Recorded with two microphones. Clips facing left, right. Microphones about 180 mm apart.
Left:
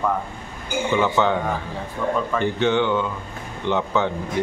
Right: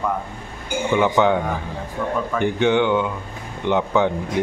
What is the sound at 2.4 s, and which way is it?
Speech, 15° right (ahead or behind).